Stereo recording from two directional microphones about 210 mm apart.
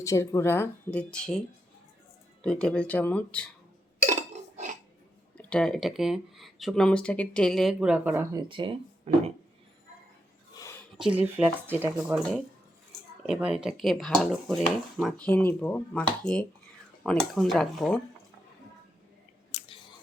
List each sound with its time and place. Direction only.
0.0 s speech: 15° left (ahead or behind)
4.0 s dishes: 35° right (ahead or behind)
5.4 s speech: 5° left (ahead or behind); by 9.2 s 30° right (ahead or behind)
10.5 s a sound: 15° left (ahead or behind)
10.9 s speech: 5° right (ahead or behind)
19.5 s chewing: 30° left (ahead or behind)